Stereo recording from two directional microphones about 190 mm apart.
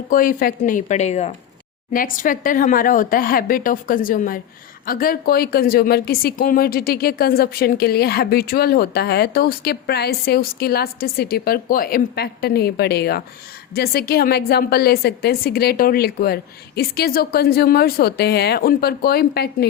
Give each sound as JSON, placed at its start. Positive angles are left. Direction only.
{"t": 0.1, "sound": "a woman's voice", "side_deg": 45}
{"t": 1.9, "sound": "a woman's voice", "side_deg": 45}